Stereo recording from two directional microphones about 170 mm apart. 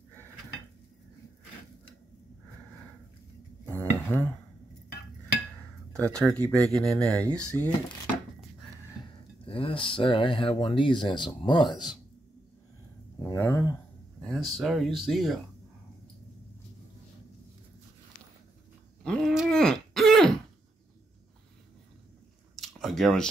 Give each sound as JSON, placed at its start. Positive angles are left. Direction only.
{"t": 4.1, "sound": "dishes", "side_deg": 5}
{"t": 5.9, "sound": "speech", "side_deg": 5}
{"t": 9.4, "sound": "speech", "side_deg": 30}
{"t": 13.3, "sound": "speech", "side_deg": 15}
{"t": 14.2, "sound": "speech", "side_deg": 0}
{"t": 19.0, "sound": "groan", "side_deg": 0}
{"t": 22.6, "sound": "a sound", "side_deg": 0}